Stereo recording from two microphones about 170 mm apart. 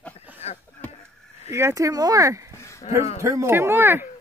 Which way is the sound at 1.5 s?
15° right (ahead or behind).